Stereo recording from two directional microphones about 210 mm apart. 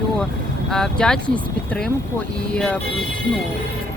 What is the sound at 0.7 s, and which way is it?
Speech, centre (ahead or behind).